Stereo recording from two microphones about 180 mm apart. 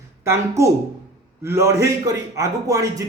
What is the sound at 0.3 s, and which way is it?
A man's voice, 15° right (ahead or behind).